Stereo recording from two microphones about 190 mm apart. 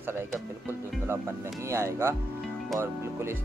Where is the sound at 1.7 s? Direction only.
15° right (ahead or behind).